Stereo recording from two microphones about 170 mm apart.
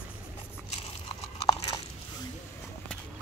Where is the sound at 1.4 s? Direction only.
25° left (ahead or behind).